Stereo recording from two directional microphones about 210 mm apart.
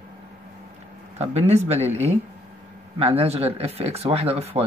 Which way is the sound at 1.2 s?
30° right (ahead or behind).